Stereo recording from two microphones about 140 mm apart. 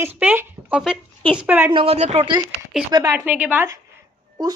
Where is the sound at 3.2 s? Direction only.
10° right (ahead or behind).